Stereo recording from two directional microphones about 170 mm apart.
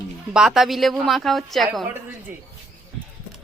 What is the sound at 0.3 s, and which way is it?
A woman's voice, 5° right (ahead or behind).